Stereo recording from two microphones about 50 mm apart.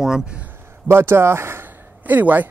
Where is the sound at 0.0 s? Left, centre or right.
Centre.